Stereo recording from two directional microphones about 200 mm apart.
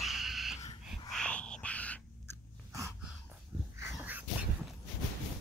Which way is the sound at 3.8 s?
10° right (ahead or behind).